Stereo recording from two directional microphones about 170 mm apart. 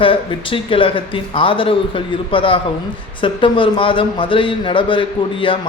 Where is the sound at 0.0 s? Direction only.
30° left (ahead or behind).